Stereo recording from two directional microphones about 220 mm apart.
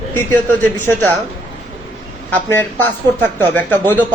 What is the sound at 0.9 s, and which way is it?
Speech, 5° left (ahead or behind).